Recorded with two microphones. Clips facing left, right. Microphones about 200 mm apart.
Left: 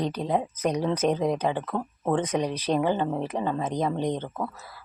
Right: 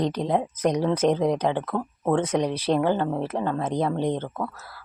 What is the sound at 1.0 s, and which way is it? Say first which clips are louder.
Speech: right 3 dB; 10° left (ahead or behind).